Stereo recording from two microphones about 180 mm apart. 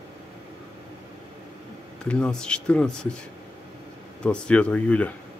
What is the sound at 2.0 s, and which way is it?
Speech, 5° left (ahead or behind).